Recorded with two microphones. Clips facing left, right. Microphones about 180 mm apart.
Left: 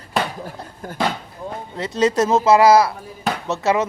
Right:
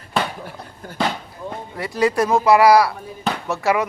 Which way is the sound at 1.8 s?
20° left (ahead or behind).